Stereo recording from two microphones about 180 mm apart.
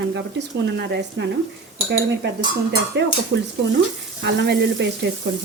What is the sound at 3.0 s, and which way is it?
Speech, 75° right (ahead or behind).